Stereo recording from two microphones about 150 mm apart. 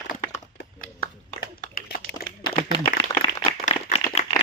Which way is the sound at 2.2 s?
25° left (ahead or behind).